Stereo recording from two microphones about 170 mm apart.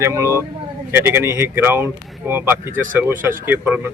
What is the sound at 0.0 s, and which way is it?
Speech, 15° right (ahead or behind).